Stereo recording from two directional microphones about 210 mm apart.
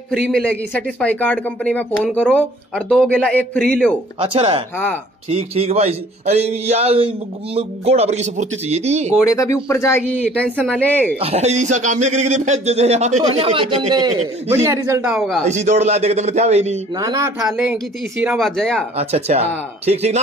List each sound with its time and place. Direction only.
0.1 s a man's voice: 5° left (ahead or behind)
4.2 s a man's voice: 25° right (ahead or behind)
9.2 s speech: 15° left (ahead or behind)
11.1 s a man's voice: 30° right (ahead or behind)
15.0 s a man's voice: centre (ahead or behind)
15.4 s a man's voice: 35° right (ahead or behind)
16.9 s speech: 15° right (ahead or behind)
17.4 s a man's voice: centre (ahead or behind)
18.9 s a man's voice: 30° right (ahead or behind)